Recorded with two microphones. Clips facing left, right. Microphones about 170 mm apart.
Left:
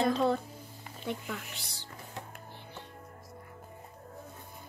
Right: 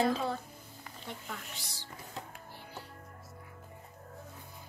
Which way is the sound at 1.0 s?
65° left (ahead or behind).